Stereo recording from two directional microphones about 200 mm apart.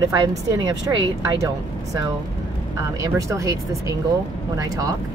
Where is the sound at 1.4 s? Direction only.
15° right (ahead or behind).